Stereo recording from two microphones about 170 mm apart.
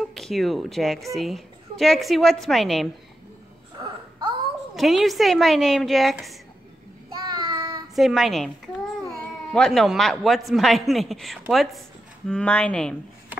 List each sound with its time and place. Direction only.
0.0 s a woman's voice: centre (ahead or behind)
3.7 s wail: 25° right (ahead or behind)
4.7 s a woman's voice: centre (ahead or behind)
7.2 s child singing: 25° right (ahead or behind)
7.9 s a woman's voice: centre (ahead or behind)